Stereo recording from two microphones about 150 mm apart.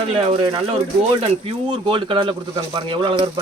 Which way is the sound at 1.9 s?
35° right (ahead or behind).